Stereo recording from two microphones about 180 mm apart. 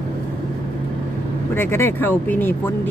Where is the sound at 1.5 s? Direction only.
15° left (ahead or behind).